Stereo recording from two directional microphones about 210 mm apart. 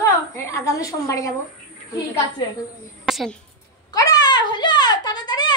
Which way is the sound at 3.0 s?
Centre (ahead or behind).